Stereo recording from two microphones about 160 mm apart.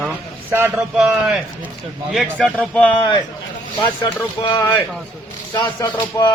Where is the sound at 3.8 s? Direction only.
25° left (ahead or behind).